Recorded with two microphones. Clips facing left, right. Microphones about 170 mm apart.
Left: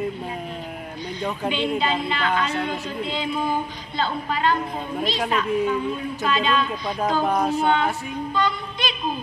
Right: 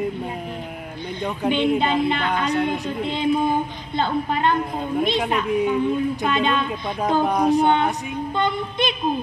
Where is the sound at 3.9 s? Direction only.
55° right (ahead or behind).